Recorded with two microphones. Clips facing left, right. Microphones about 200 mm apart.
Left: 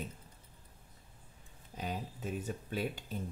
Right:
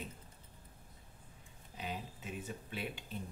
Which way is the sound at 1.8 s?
45° left (ahead or behind).